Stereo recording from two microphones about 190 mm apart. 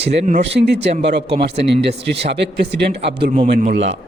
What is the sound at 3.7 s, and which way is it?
Speech, 75° right (ahead or behind).